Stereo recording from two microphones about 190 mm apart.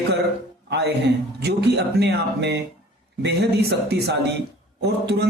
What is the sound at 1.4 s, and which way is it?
Speech, 60° right (ahead or behind).